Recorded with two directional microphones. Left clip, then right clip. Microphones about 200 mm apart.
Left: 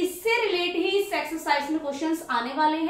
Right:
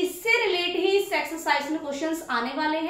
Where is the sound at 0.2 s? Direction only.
15° right (ahead or behind).